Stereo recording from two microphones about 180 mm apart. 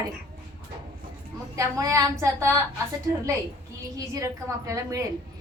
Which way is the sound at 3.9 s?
15° right (ahead or behind).